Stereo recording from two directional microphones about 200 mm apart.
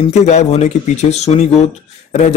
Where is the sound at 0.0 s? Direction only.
35° left (ahead or behind).